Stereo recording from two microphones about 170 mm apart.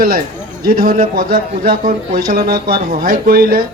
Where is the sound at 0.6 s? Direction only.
60° right (ahead or behind).